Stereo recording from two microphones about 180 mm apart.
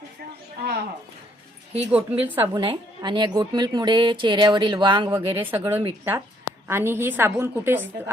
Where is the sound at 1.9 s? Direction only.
10° right (ahead or behind).